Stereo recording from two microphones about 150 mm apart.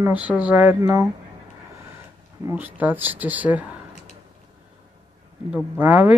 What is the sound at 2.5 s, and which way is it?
Speech, 10° right (ahead or behind).